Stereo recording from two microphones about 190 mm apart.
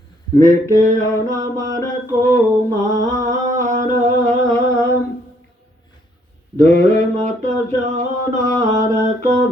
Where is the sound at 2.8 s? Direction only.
40° right (ahead or behind).